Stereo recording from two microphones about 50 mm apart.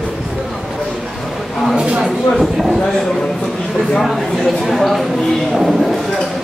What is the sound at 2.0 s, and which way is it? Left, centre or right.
Speech, centre.